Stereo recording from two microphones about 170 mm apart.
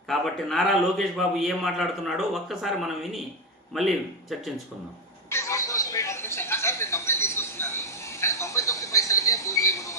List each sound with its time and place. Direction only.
0.1 s a man's voice: centre (ahead or behind)
5.3 s television: 15° left (ahead or behind)